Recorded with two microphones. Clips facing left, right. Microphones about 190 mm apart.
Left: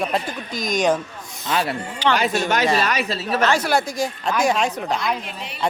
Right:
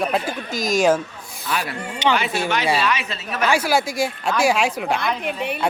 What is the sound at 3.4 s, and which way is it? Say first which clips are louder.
Speech: right 1 dB; 10° right (ahead or behind).